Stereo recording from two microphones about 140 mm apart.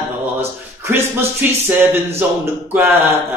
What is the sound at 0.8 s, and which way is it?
Mantra, 15° right (ahead or behind).